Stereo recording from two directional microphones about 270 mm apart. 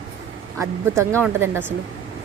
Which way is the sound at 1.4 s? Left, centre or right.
Centre.